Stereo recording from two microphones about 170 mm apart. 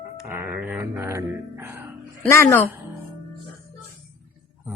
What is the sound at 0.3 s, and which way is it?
Speech, 10° right (ahead or behind).